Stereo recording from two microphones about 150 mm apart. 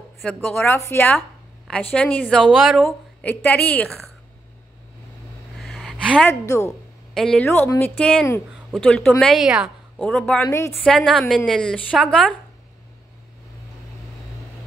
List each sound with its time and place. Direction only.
0.2 s a woman's voice: 10° left (ahead or behind)
2.4 s speech: centre (ahead or behind)
2.8 s a woman's voice: 10° left (ahead or behind)
5.6 s a sound: centre (ahead or behind)
6.2 s a woman's voice: 20° left (ahead or behind)
7.2 s speech: 5° left (ahead or behind)
7.4 s a woman's voice: 15° left (ahead or behind)